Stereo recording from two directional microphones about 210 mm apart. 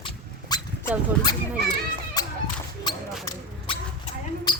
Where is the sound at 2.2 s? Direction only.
15° left (ahead or behind).